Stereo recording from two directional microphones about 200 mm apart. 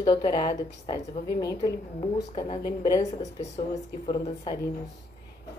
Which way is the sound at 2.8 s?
15° left (ahead or behind).